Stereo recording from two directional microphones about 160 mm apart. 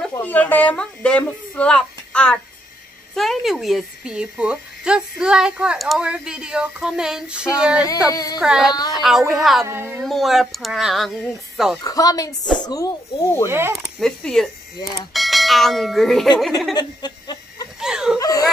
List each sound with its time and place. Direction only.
0.1 s speech: 10° left (ahead or behind); by 7.9 s 5° right (ahead or behind)
8.1 s speech: 25° left (ahead or behind)
8.4 s speech: 5° right (ahead or behind)
9.7 s a woman's voice: 15° right (ahead or behind)
10.0 s speech: centre (ahead or behind)
11.8 s speech: 25° left (ahead or behind)
13.5 s a woman's voice: 15° right (ahead or behind)
13.7 s speech: 5° left (ahead or behind)
16.7 s chuckle: 25° left (ahead or behind)
17.7 s a sound: 5° right (ahead or behind)
18.2 s a sound: 20° left (ahead or behind)